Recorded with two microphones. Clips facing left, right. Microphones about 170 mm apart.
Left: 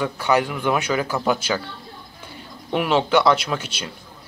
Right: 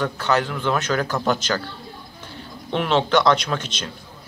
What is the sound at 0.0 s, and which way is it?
Speech, 10° left (ahead or behind).